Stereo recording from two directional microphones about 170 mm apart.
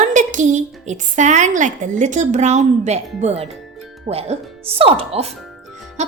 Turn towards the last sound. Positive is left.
turn(degrees=-40)  # may be behind; listen again after turning